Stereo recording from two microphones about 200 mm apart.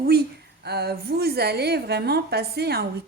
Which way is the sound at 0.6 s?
55° right (ahead or behind).